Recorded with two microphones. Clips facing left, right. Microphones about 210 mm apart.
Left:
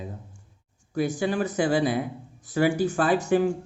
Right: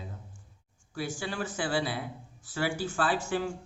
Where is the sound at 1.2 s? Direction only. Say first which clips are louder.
Left 9 dB; 20° left (ahead or behind).